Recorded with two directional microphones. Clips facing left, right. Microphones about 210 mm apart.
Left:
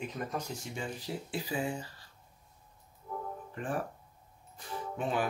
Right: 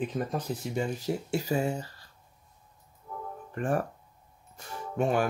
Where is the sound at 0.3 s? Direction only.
35° right (ahead or behind).